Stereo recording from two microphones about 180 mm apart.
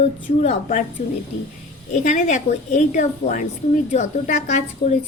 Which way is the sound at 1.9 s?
45° left (ahead or behind).